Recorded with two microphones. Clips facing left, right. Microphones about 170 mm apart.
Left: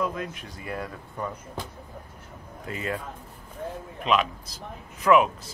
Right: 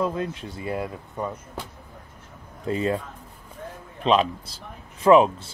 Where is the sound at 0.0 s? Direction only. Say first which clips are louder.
Right 4 dB; 30° right (ahead or behind).